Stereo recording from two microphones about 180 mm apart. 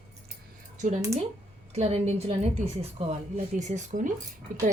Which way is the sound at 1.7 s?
35° right (ahead or behind).